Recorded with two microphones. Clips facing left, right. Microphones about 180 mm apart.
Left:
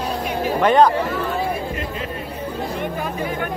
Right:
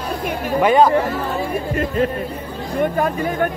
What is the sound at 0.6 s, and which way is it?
Speech, 5° right (ahead or behind).